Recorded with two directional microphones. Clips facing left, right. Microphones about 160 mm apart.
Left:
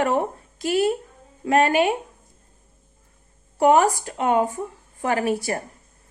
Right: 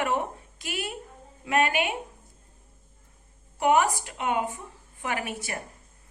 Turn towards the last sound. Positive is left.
turn(degrees=40)  # may be behind; listen again after turning